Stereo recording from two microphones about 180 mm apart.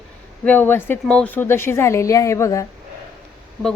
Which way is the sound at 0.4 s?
10° left (ahead or behind).